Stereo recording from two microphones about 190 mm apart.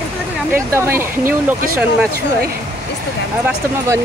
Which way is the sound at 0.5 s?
10° right (ahead or behind).